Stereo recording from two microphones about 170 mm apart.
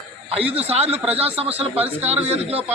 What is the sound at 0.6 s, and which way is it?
A man's voice, 40° right (ahead or behind).